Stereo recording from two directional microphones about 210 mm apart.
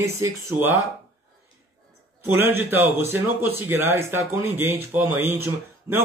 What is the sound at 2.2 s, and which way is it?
Speech, 10° right (ahead or behind).